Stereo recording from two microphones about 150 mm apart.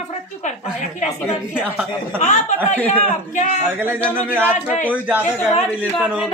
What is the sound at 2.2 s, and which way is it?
A woman's voice, 50° left (ahead or behind).